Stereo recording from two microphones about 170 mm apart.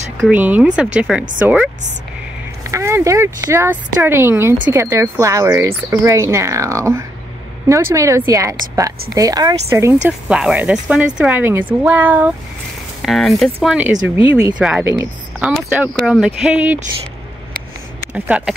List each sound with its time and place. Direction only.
0.3 s speech: 10° right (ahead or behind)
2.7 s speech: 15° right (ahead or behind)
10.0 s speech: 5° right (ahead or behind)
13.0 s speech: centre (ahead or behind)
18.1 s speech: 5° right (ahead or behind)